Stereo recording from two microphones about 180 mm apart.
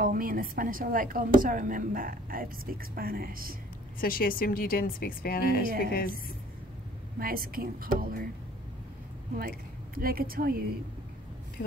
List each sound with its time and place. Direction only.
0.0 s a woman's voice: 50° right (ahead or behind)
4.0 s a woman's voice: 55° left (ahead or behind)
7.2 s a woman's voice: 55° right (ahead or behind)
9.4 s a woman's voice: 55° right (ahead or behind)